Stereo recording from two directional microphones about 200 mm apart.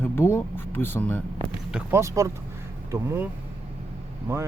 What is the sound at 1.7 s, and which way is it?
Speech, 15° right (ahead or behind).